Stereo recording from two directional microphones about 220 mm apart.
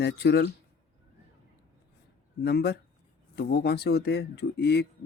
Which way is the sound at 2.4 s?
50° left (ahead or behind).